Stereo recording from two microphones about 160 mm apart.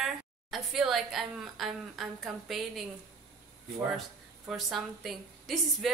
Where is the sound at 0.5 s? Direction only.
Centre (ahead or behind).